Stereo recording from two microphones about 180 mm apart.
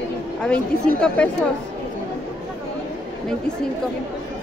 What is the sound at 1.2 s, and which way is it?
Speech, 5° left (ahead or behind).